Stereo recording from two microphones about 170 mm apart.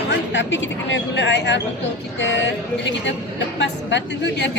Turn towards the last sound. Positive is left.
turn(degrees=90)